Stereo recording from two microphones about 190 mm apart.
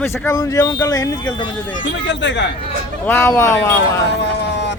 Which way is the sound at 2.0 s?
70° left (ahead or behind).